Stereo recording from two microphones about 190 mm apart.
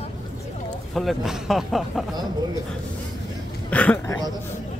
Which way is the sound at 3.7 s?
10° left (ahead or behind).